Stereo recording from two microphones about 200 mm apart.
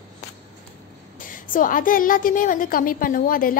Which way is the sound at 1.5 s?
45° left (ahead or behind).